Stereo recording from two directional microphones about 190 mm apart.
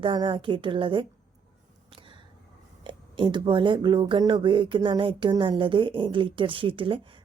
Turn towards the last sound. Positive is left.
turn(degrees=-25)  # may be behind; listen again after turning